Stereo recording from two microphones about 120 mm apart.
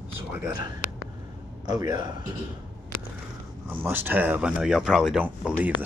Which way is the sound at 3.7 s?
15° right (ahead or behind).